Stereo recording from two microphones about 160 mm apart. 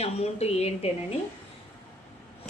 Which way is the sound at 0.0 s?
40° left (ahead or behind).